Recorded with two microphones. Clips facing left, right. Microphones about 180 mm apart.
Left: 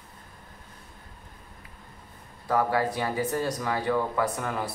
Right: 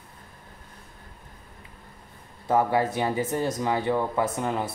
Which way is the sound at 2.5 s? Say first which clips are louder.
Right 2 dB; 20° right (ahead or behind).